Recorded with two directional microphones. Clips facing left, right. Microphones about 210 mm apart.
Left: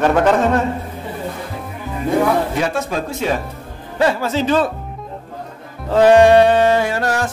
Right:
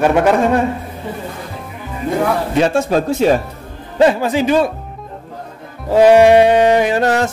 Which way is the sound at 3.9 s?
20° right (ahead or behind).